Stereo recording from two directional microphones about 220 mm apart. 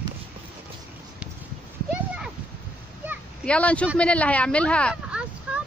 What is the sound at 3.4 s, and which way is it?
Speech, 5° left (ahead or behind).